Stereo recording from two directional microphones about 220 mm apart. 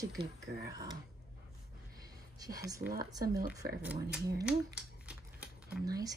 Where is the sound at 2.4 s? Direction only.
15° right (ahead or behind).